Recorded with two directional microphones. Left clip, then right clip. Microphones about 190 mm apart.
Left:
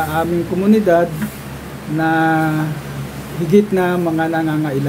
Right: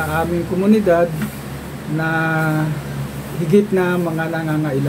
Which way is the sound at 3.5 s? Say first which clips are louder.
Left 1 dB; 20° left (ahead or behind).